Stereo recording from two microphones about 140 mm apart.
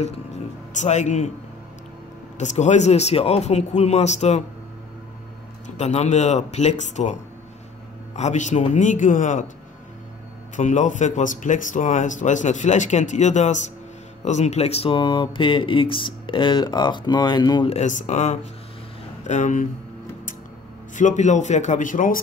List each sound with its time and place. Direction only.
0.7 s speech: 55° left (ahead or behind)
2.3 s speech: 55° left (ahead or behind)
5.8 s speech: 55° left (ahead or behind)
8.2 s speech: 60° left (ahead or behind)
10.5 s speech: 60° left (ahead or behind); by 17.6 s 30° left (ahead or behind)
17.6 s speech: 60° left (ahead or behind)
20.9 s speech: 60° left (ahead or behind)